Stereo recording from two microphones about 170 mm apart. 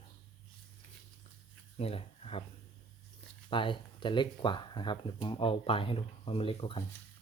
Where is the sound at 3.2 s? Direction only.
30° left (ahead or behind).